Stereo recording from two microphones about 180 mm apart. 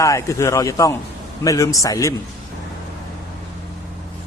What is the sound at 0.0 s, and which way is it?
A man's voice, 15° left (ahead or behind).